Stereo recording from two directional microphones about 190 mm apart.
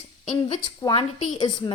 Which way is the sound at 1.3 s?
25° left (ahead or behind).